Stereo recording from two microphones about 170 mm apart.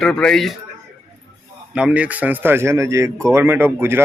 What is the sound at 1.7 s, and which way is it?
Speech, 5° right (ahead or behind).